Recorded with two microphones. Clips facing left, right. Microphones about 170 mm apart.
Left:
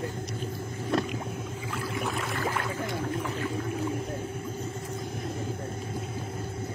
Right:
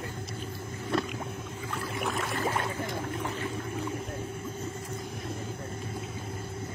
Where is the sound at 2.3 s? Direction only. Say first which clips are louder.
Right 2 dB; 25° right (ahead or behind).